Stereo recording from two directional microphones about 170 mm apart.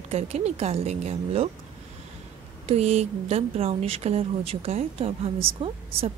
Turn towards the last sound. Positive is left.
turn(degrees=-35)  # may be behind; listen again after turning